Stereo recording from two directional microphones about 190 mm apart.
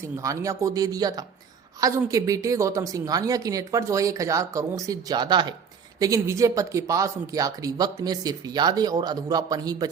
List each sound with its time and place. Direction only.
0.0 s a woman's voice: 15° right (ahead or behind)